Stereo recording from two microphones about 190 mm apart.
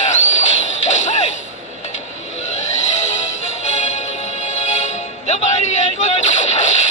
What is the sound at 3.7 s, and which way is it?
Music, 40° left (ahead or behind).